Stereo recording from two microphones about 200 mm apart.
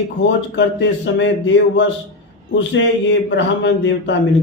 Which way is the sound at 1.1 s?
65° left (ahead or behind).